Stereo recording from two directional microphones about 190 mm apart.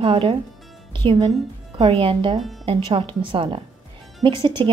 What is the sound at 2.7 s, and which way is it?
A woman's voice, 25° right (ahead or behind).